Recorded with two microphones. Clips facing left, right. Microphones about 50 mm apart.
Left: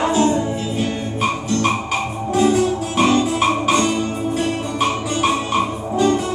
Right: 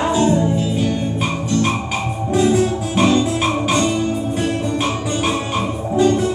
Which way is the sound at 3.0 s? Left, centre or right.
Centre.